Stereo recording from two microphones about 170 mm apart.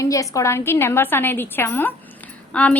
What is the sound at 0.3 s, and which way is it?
A woman's voice, 15° left (ahead or behind).